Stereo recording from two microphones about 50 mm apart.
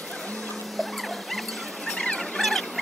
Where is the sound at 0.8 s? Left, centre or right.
Centre.